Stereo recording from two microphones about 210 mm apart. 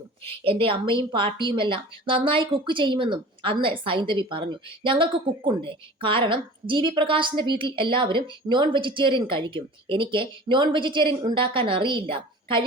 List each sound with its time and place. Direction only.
0.4 s speech: 25° right (ahead or behind)